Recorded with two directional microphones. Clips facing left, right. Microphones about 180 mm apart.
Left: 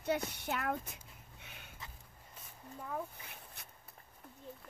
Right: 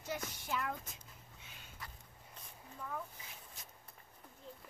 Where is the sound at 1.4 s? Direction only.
60° left (ahead or behind).